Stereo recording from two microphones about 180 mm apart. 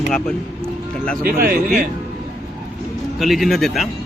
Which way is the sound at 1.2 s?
55° right (ahead or behind).